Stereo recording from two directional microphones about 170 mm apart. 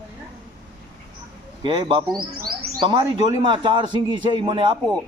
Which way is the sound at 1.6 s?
30° right (ahead or behind).